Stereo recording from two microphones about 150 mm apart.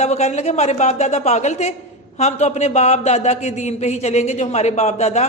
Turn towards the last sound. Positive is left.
turn(degrees=50)  # may be behind; listen again after turning